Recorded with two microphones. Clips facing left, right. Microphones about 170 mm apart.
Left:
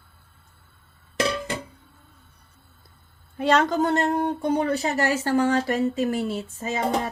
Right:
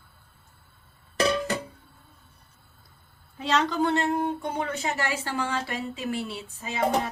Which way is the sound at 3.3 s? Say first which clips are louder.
Left 5 dB; 55° left (ahead or behind).